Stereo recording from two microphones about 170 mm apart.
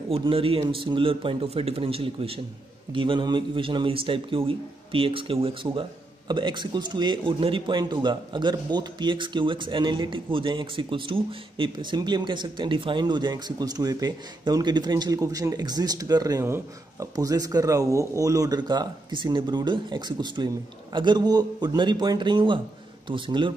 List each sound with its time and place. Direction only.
0.1 s a man's voice: 30° right (ahead or behind)